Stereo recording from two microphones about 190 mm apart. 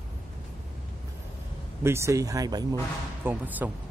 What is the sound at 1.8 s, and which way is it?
Speech, 15° right (ahead or behind).